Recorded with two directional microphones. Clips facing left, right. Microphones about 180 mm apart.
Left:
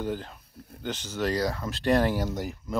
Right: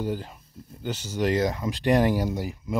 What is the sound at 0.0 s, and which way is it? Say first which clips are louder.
Speech: right 2 dB; 10° right (ahead or behind).